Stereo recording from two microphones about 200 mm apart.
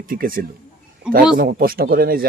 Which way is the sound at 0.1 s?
45° right (ahead or behind).